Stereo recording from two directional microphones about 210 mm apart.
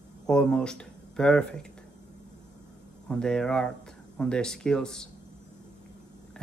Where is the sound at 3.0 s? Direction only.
5° left (ahead or behind).